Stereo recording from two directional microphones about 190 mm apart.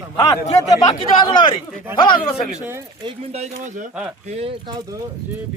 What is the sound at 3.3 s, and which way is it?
Speech, 40° right (ahead or behind).